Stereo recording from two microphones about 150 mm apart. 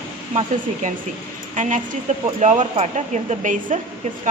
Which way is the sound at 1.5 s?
55° right (ahead or behind).